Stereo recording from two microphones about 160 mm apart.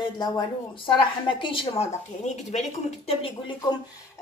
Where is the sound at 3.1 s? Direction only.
35° left (ahead or behind).